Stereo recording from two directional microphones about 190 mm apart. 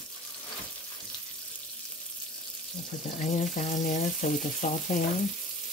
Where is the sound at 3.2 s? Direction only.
40° left (ahead or behind).